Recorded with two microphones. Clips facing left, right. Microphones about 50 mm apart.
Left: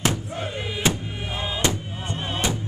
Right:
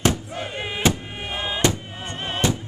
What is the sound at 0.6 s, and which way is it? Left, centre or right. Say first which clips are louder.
Music: right 3 dB; right.